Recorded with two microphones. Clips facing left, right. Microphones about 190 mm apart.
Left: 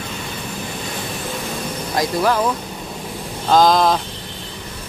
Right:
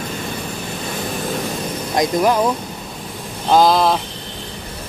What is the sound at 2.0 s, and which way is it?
Speech, 15° right (ahead or behind).